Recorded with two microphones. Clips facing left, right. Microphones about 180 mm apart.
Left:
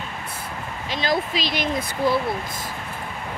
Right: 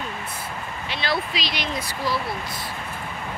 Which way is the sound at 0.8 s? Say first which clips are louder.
Left 3 dB; 40° left (ahead or behind).